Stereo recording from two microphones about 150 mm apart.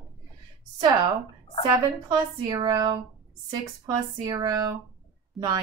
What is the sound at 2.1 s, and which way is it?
A woman's voice, 30° right (ahead or behind).